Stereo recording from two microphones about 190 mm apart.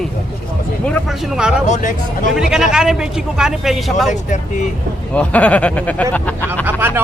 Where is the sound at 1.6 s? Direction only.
40° left (ahead or behind).